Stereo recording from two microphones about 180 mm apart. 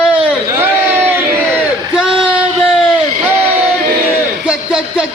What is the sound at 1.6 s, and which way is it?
Crowd, 5° right (ahead or behind).